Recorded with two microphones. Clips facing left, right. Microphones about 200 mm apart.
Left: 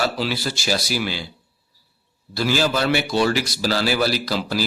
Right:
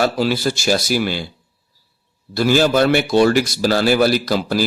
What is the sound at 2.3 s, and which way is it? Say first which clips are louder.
A man's voice: right 6 dB; 50° right (ahead or behind).